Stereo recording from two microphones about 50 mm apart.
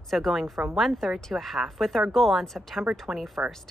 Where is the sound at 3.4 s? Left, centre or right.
Right.